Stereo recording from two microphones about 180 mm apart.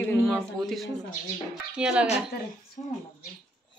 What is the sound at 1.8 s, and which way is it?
Speech, 5° right (ahead or behind).